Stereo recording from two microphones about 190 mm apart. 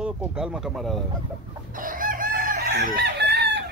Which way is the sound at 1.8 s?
45° right (ahead or behind).